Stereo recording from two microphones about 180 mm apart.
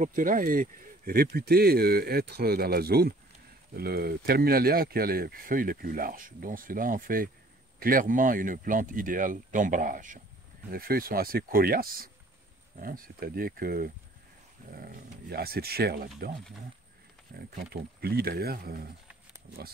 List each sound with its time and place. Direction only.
0.0 s speech: 50° right (ahead or behind)
17.3 s speech: 60° right (ahead or behind)